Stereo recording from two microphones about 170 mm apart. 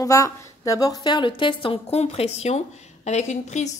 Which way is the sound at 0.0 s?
20° left (ahead or behind).